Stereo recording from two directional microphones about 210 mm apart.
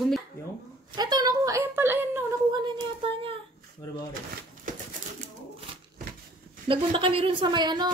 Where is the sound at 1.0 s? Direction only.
20° right (ahead or behind).